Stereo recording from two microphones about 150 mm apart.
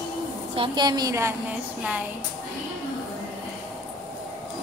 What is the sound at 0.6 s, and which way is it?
Speech, 30° right (ahead or behind).